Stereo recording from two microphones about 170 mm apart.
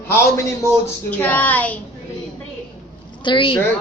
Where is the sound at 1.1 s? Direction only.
10° left (ahead or behind).